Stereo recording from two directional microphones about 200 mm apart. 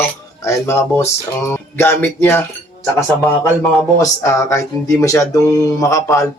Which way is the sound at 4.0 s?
15° left (ahead or behind).